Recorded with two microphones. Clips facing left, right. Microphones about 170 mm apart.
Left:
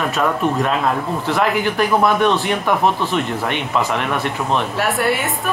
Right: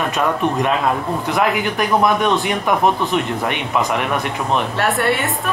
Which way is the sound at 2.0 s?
15° right (ahead or behind).